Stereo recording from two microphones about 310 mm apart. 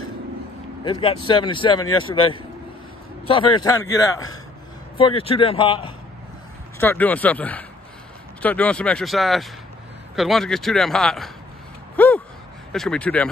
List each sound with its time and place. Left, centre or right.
0.8 s a man's voice: centre
6.8 s speech: centre
12.0 s a sound: centre
12.7 s speech: centre